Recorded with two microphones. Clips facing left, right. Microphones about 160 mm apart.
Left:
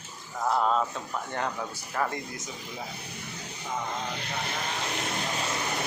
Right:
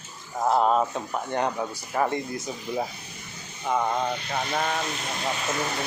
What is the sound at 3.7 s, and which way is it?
Speech, 70° right (ahead or behind).